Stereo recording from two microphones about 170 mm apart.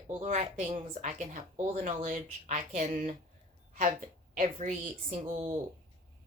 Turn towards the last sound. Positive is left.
turn(degrees=-40)  # may be behind; listen again after turning